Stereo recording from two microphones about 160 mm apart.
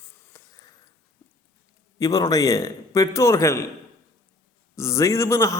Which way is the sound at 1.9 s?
20° left (ahead or behind).